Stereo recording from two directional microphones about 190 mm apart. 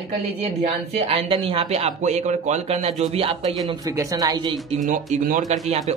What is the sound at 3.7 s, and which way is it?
Speech, 20° right (ahead or behind).